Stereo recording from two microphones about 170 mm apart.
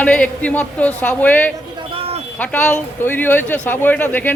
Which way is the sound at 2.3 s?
10° left (ahead or behind).